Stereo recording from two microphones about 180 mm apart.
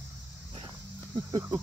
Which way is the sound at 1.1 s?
20° right (ahead or behind).